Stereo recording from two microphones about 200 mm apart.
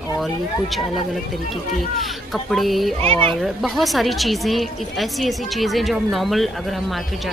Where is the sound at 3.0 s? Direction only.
30° right (ahead or behind).